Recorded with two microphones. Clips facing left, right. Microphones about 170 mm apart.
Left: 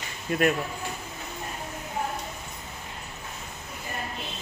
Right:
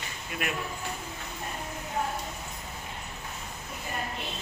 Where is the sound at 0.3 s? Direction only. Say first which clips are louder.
Left 11 dB; 45° left (ahead or behind).